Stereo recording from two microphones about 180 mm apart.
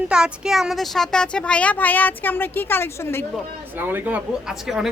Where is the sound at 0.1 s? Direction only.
5° right (ahead or behind); by 3.2 s 15° left (ahead or behind).